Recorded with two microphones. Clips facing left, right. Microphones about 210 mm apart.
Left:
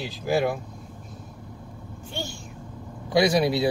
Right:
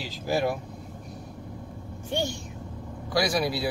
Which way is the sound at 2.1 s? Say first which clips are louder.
Right 6 dB; 20° right (ahead or behind).